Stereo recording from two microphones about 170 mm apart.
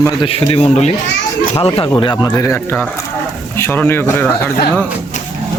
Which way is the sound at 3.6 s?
15° left (ahead or behind).